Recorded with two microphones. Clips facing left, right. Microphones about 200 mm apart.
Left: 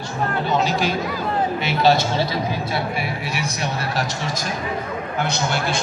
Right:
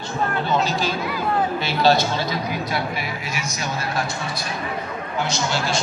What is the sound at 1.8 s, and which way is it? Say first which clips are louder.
Speech: even; 25° left (ahead or behind).